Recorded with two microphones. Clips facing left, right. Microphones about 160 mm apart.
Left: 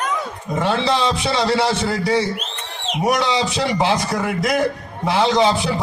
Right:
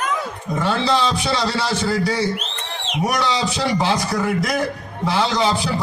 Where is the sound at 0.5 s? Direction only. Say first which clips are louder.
Left 1 dB; 20° left (ahead or behind).